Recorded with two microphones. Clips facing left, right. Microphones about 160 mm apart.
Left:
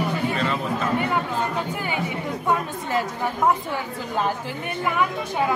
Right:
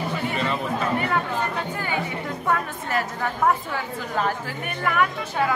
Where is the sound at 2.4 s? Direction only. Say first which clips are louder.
Left 1 dB; 20° left (ahead or behind).